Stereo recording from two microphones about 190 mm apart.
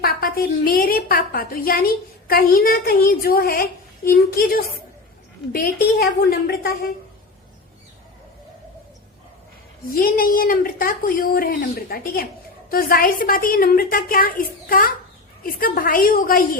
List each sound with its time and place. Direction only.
0.0 s a woman's voice: 50° left (ahead or behind)
9.9 s a woman's voice: 50° left (ahead or behind)